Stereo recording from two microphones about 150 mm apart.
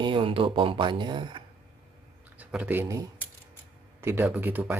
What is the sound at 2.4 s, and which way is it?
Speech, 10° right (ahead or behind).